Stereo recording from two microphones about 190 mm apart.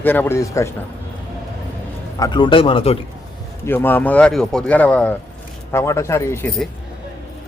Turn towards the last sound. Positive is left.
turn(degrees=15)  # may be behind; listen again after turning